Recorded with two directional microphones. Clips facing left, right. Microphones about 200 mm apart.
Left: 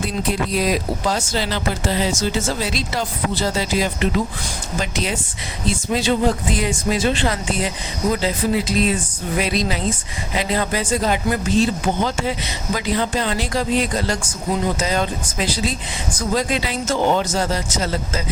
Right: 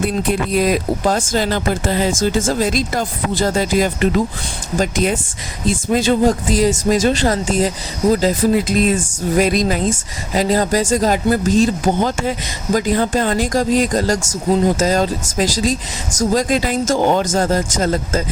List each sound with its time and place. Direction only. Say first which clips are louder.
0.0 s speech: right 4 dB; 55° right (ahead or behind)